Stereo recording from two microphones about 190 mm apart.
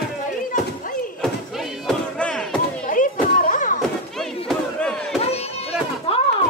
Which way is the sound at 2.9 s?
45° left (ahead or behind).